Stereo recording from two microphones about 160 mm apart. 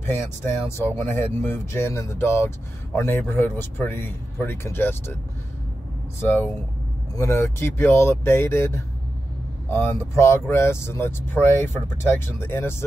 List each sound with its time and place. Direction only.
0.0 s speech: 15° left (ahead or behind)
6.2 s speech: 15° left (ahead or behind)